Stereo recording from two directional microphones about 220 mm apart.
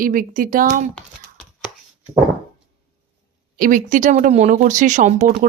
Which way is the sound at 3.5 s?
40° right (ahead or behind).